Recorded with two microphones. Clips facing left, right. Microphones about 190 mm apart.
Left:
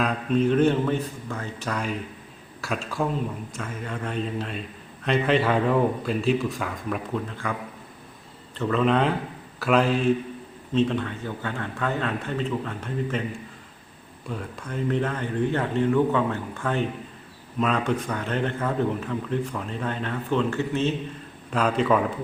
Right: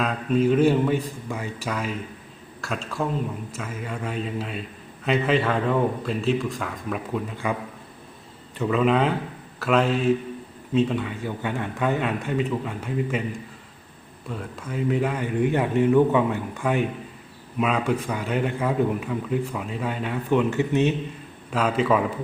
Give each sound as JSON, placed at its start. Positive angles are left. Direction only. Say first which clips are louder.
{"t": 0.0, "sound": "a man's voice", "louder": "right 1 dB", "side_deg": 0}
{"t": 8.5, "sound": "a man's voice", "louder": "right 1 dB", "side_deg": -5}
{"t": 14.3, "sound": "a man's voice", "louder": "even", "side_deg": 0}
{"t": 21.5, "sound": "a man's voice", "louder": "even", "side_deg": -5}